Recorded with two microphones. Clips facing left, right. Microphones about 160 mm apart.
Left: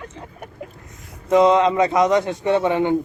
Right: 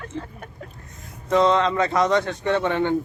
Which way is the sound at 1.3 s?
15° left (ahead or behind).